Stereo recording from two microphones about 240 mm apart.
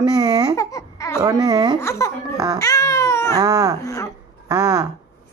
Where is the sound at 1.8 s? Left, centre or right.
Centre.